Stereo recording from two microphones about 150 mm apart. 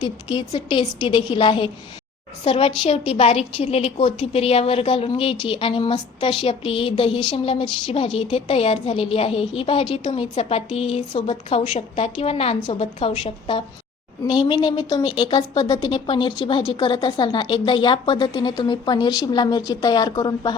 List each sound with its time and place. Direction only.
0.0 s a woman's voice: 30° left (ahead or behind)